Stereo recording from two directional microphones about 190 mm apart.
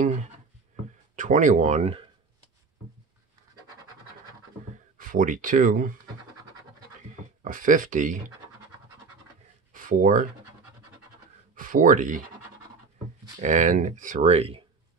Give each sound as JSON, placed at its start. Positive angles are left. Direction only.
{"t": 0.0, "sound": "speech", "side_deg": -40}
{"t": 4.9, "sound": "speech", "side_deg": -45}
{"t": 7.4, "sound": "speech", "side_deg": -45}
{"t": 9.7, "sound": "a sound", "side_deg": -45}
{"t": 11.5, "sound": "speech", "side_deg": -45}
{"t": 13.4, "sound": "speech", "side_deg": -40}